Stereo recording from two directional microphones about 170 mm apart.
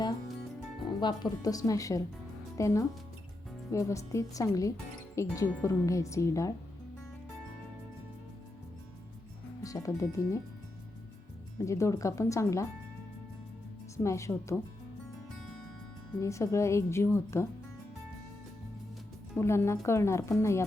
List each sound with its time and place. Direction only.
0.9 s speech: 25° left (ahead or behind)
9.6 s speech: 20° left (ahead or behind)
11.5 s speech: 15° left (ahead or behind)
13.9 s speech: 15° left (ahead or behind)
16.2 s speech: 15° left (ahead or behind)
19.4 s speech: 15° left (ahead or behind)